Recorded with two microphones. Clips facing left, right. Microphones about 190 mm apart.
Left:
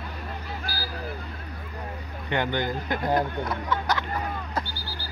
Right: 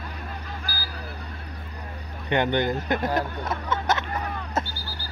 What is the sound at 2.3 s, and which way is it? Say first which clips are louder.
Speech: right 4 dB; 20° right (ahead or behind).